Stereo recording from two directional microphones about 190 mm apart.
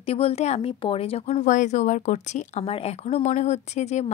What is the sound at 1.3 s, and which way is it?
A woman's voice, 40° left (ahead or behind).